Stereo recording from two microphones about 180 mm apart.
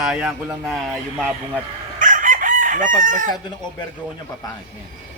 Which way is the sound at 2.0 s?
45° right (ahead or behind).